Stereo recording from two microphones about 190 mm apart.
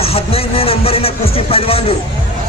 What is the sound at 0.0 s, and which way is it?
Speech, 30° left (ahead or behind).